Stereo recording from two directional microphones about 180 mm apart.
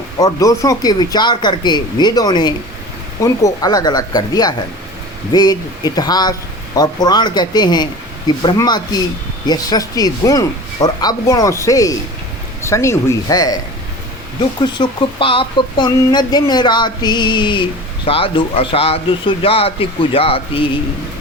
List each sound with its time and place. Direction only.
0.2 s speech: 20° left (ahead or behind)
14.6 s speech: 25° left (ahead or behind)